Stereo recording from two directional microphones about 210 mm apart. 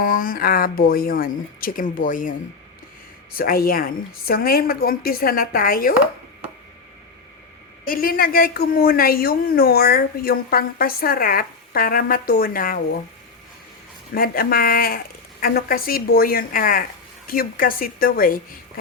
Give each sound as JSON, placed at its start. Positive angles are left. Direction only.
{"t": 0.0, "sound": "a woman's voice", "side_deg": 40}
{"t": 3.3, "sound": "a woman's voice", "side_deg": 45}
{"t": 7.9, "sound": "a woman's voice", "side_deg": 45}
{"t": 14.1, "sound": "a woman's voice", "side_deg": 45}